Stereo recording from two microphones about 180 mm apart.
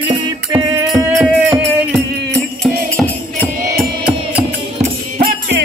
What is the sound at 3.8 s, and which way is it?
Music, 5° right (ahead or behind).